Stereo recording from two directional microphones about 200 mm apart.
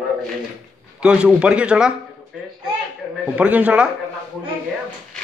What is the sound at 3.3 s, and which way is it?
Speech, 5° right (ahead or behind).